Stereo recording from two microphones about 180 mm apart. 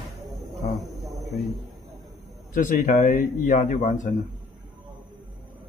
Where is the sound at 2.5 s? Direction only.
50° left (ahead or behind).